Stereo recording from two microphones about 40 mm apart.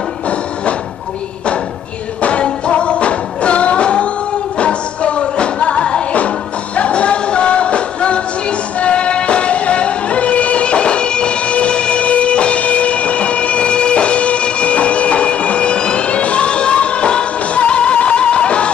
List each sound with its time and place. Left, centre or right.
2.2 s music: left